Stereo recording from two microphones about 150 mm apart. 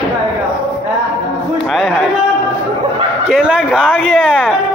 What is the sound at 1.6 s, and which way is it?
Speech, centre (ahead or behind).